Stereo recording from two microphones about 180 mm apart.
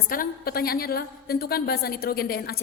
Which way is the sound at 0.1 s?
55° left (ahead or behind).